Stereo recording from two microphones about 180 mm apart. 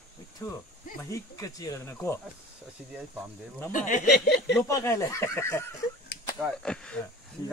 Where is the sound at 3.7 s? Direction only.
45° left (ahead or behind).